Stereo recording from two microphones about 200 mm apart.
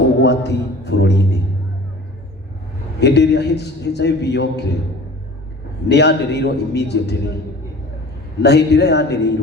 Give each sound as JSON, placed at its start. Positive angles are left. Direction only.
{"t": 0.2, "sound": "a man's voice", "side_deg": 60}
{"t": 3.0, "sound": "a man's voice", "side_deg": 55}
{"t": 5.9, "sound": "a man's voice", "side_deg": 55}
{"t": 8.4, "sound": "a man's voice", "side_deg": 55}